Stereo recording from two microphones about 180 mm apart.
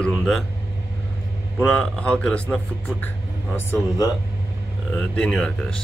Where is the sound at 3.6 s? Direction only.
15° left (ahead or behind).